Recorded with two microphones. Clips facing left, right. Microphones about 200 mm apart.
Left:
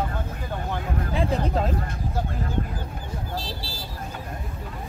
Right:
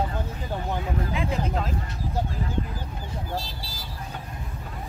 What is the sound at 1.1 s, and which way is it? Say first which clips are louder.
Speech: left 6 dB; 40° left (ahead or behind).